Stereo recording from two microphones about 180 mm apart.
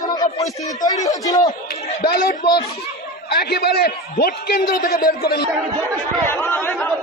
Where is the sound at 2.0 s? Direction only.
60° left (ahead or behind).